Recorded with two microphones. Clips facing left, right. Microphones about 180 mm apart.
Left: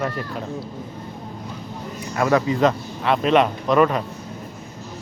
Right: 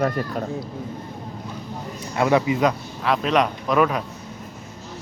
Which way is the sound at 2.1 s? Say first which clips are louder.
Even; 20° right (ahead or behind).